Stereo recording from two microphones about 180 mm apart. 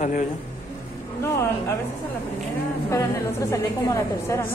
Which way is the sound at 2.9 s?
15° left (ahead or behind).